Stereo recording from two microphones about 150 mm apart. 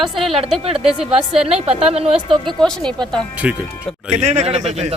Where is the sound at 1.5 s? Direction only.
40° right (ahead or behind).